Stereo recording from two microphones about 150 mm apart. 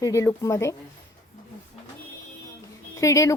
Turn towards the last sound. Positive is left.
turn(degrees=20)  # may be behind; listen again after turning